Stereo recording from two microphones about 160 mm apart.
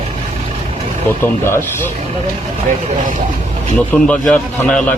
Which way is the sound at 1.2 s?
15° left (ahead or behind).